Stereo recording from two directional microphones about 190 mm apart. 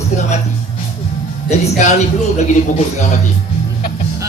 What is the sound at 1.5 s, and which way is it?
Speech, 40° left (ahead or behind).